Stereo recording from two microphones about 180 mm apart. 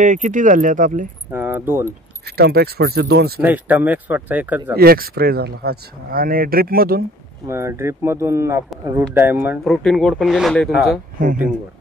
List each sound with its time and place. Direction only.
0.0 s speech: 45° right (ahead or behind)
1.3 s speech: 10° right (ahead or behind)
2.2 s speech: 60° right (ahead or behind)
3.3 s speech: 10° right (ahead or behind)
4.7 s speech: 55° right (ahead or behind)
7.4 s speech: 15° right (ahead or behind)
9.7 s speech: centre (ahead or behind)